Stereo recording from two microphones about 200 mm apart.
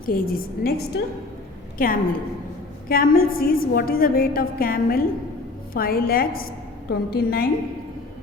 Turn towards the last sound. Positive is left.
turn(degrees=50)  # may be behind; listen again after turning